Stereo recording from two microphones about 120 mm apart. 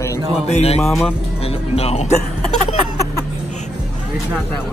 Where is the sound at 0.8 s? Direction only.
Centre (ahead or behind).